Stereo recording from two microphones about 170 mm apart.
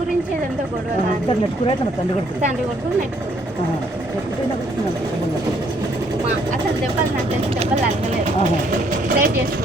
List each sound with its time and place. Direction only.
9.0 s speech: 60° right (ahead or behind)